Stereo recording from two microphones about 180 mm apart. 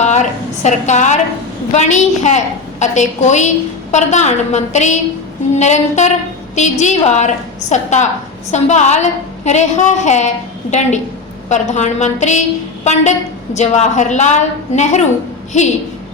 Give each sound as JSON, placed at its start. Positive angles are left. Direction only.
{"t": 0.0, "sound": "a woman's voice", "side_deg": 40}